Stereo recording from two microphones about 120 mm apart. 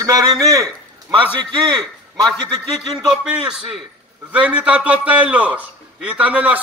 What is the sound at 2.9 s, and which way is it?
A man's voice, 5° right (ahead or behind).